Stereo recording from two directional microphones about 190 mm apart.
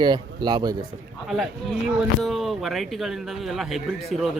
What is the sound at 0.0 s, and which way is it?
Speech, 25° right (ahead or behind).